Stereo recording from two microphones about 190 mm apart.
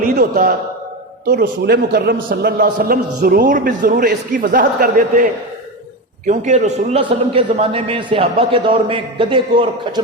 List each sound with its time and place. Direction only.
0.0 s a man's voice: 45° right (ahead or behind); by 10.0 s 25° right (ahead or behind)